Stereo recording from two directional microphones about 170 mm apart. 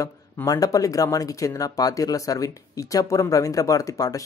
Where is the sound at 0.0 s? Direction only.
20° left (ahead or behind).